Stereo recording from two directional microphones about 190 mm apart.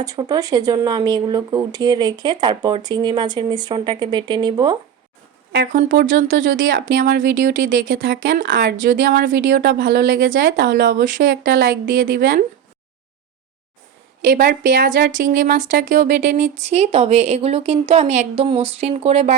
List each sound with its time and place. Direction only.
0.0 s speech: 20° right (ahead or behind)
5.9 s a woman's voice: 70° right (ahead or behind)
8.0 s a woman's voice: 65° right (ahead or behind)
11.0 s speech: 50° right (ahead or behind)
14.3 s speech: 50° right (ahead or behind); by 19.4 s 35° right (ahead or behind)